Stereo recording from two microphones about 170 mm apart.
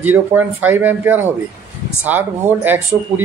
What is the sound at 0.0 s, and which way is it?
A man's voice, 10° right (ahead or behind).